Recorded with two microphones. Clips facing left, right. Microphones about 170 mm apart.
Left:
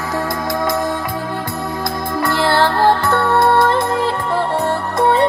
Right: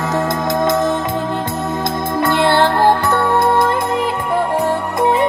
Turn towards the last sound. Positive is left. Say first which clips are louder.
# even
turn(degrees=-15)  # may be behind; listen again after turning